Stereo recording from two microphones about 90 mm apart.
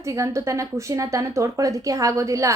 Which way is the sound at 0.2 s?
35° right (ahead or behind).